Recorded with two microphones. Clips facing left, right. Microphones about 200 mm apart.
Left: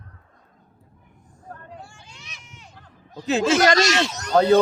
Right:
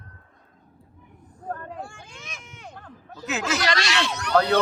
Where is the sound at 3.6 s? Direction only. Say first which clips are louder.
Left 7 dB; 45° left (ahead or behind).